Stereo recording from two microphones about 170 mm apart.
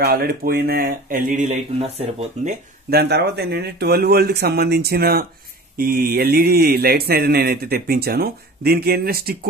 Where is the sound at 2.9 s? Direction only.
70° right (ahead or behind).